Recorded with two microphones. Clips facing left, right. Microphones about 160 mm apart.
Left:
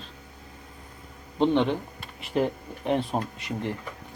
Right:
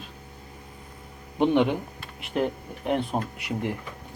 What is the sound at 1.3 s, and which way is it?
Speech, 15° right (ahead or behind).